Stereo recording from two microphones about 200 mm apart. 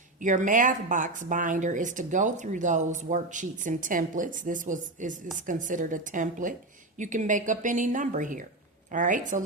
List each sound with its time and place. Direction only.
0.2 s speech: 40° right (ahead or behind)